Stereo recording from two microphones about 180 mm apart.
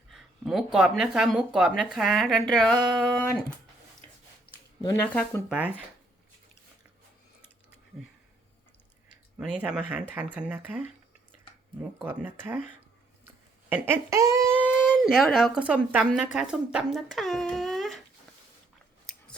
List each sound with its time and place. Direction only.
0.1 s speech: centre (ahead or behind)
4.8 s speech: 20° left (ahead or behind)
5.5 s speech: 10° right (ahead or behind)
9.4 s speech: 5° right (ahead or behind)